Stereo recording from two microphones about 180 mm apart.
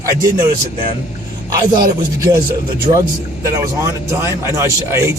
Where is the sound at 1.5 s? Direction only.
20° right (ahead or behind).